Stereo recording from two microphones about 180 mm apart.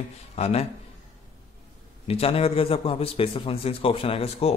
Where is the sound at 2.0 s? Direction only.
35° left (ahead or behind).